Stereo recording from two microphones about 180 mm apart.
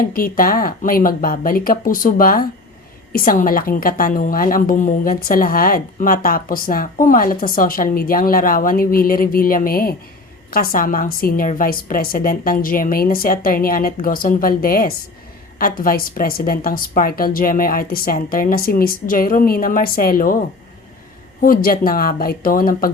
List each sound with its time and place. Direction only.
0.0 s a woman's voice: 50° left (ahead or behind)
21.4 s a woman's voice: 50° left (ahead or behind)